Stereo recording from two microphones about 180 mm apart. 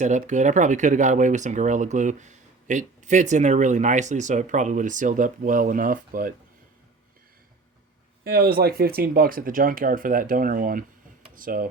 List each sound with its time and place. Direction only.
0.0 s speech: 45° right (ahead or behind)
8.2 s speech: 60° right (ahead or behind)